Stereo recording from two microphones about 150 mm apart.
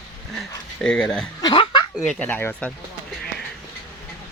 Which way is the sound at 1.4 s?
30° left (ahead or behind).